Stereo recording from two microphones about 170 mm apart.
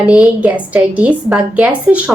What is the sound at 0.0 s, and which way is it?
A woman's voice, 5° right (ahead or behind).